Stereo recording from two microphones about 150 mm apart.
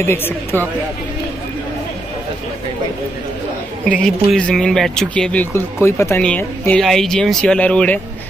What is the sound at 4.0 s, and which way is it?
Speech, 5° left (ahead or behind).